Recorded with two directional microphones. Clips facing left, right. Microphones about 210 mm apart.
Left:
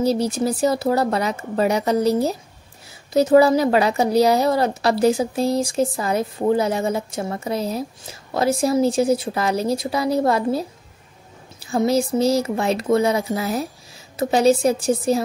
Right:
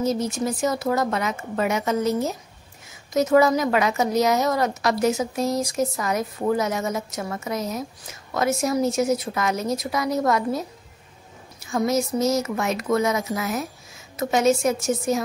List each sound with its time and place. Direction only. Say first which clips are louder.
0.0 s a woman's voice: left 4 dB; 35° left (ahead or behind)